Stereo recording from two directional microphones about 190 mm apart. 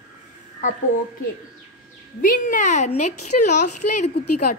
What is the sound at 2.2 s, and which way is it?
A woman's voice, 45° left (ahead or behind).